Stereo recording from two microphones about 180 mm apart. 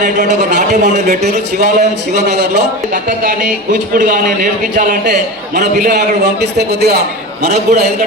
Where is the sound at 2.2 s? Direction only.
65° right (ahead or behind); by 5.1 s 45° right (ahead or behind).